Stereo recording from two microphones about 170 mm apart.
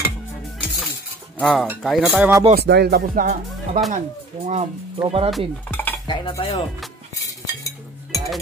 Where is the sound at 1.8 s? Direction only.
Centre (ahead or behind).